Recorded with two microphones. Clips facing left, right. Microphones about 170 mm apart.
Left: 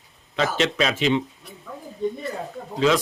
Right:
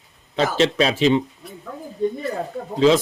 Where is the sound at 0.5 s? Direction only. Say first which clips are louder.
Right 6 dB; 35° right (ahead or behind).